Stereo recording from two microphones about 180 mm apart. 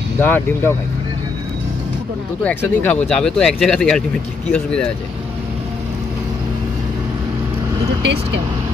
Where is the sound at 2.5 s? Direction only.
5° left (ahead or behind).